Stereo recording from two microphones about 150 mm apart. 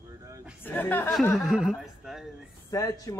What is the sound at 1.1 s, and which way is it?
Speech, centre (ahead or behind).